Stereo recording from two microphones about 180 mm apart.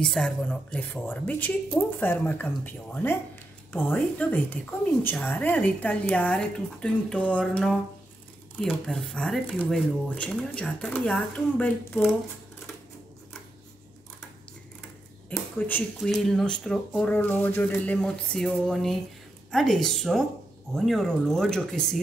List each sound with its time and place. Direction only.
0.0 s a woman's voice: 5° left (ahead or behind)
15.2 s a woman's voice: 10° left (ahead or behind)